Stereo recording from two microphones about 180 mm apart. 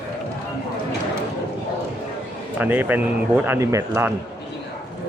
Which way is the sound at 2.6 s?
10° right (ahead or behind).